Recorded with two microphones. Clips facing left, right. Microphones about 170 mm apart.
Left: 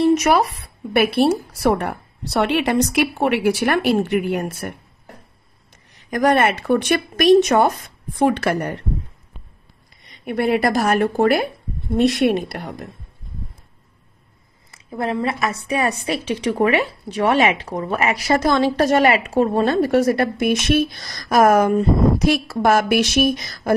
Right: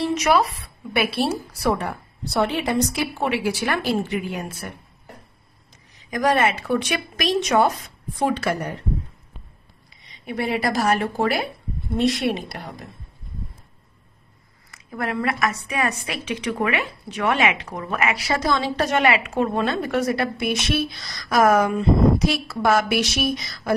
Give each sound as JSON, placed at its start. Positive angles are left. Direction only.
{"t": 0.0, "sound": "a woman's voice", "side_deg": 45}
{"t": 5.9, "sound": "a woman's voice", "side_deg": 60}
{"t": 10.0, "sound": "a woman's voice", "side_deg": 55}
{"t": 14.7, "sound": "a woman's voice", "side_deg": 25}
{"t": 18.1, "sound": "a woman's voice", "side_deg": 50}